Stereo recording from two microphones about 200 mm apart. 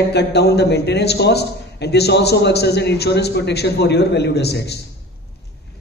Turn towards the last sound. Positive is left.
turn(degrees=55)  # may be behind; listen again after turning